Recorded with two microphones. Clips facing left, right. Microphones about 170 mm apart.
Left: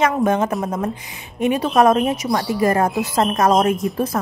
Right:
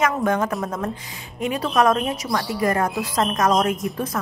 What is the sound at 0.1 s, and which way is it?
A woman's voice, 20° left (ahead or behind).